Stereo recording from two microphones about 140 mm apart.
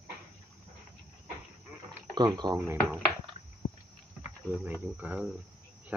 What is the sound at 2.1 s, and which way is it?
Speech, 30° right (ahead or behind).